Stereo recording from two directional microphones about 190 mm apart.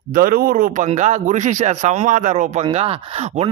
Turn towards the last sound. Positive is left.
turn(degrees=-35)  # may be behind; listen again after turning